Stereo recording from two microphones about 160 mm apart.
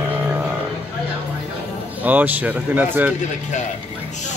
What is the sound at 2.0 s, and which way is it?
Speech, 10° right (ahead or behind).